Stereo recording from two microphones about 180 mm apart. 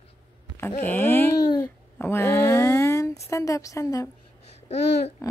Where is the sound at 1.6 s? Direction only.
15° left (ahead or behind).